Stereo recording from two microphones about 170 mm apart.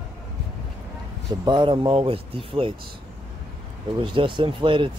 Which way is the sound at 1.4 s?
25° right (ahead or behind).